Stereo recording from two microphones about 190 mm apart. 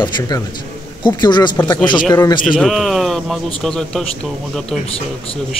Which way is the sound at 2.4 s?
Centre (ahead or behind).